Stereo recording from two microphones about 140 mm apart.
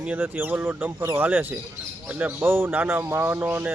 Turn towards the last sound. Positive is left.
turn(degrees=-15)  # may be behind; listen again after turning